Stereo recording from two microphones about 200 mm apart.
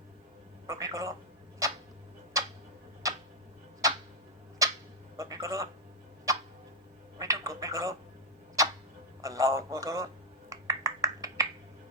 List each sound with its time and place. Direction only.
0.7 s a man's voice: 15° right (ahead or behind)
2.3 s tick-tock: 15° right (ahead or behind)
4.6 s a sound: 15° right (ahead or behind)
5.1 s a man's voice: 15° right (ahead or behind)
6.3 s tick-tock: 15° right (ahead or behind)
7.2 s speech: 15° right (ahead or behind)
9.2 s a man's voice: 15° right (ahead or behind)
10.5 s a sound: 15° right (ahead or behind)